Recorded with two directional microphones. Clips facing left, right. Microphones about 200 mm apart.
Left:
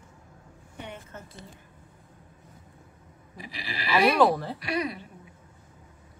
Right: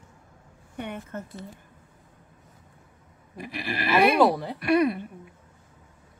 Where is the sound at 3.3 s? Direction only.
55° right (ahead or behind).